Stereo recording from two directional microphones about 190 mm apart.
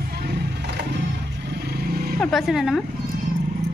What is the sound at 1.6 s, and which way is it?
Vehicle, 55° right (ahead or behind).